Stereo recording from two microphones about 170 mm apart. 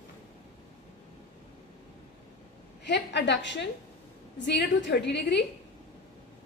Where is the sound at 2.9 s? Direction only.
90° left.